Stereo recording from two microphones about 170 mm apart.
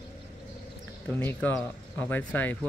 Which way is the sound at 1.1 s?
10° left (ahead or behind).